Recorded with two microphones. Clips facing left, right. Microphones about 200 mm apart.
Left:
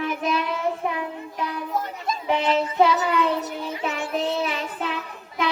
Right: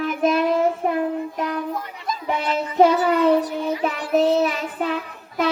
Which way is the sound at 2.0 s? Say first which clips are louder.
Left 1 dB; 25° left (ahead or behind).